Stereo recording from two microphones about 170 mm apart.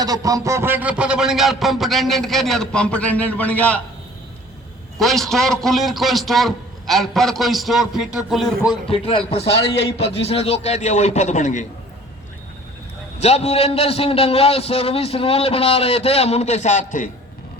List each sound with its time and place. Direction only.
0.0 s a man's voice: 20° right (ahead or behind); by 3.8 s 10° left (ahead or behind)
4.9 s a man's voice: centre (ahead or behind)
8.9 s a man's voice: 35° left (ahead or behind)
9.4 s a man's voice: 80° left
10.0 s a man's voice: 35° left (ahead or behind)
13.2 s a man's voice: 40° left (ahead or behind)